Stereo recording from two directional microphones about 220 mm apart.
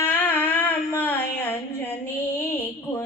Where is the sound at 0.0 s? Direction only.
10° left (ahead or behind).